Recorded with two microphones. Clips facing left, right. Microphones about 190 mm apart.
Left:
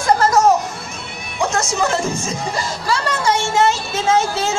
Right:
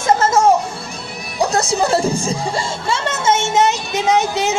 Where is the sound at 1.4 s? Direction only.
35° right (ahead or behind).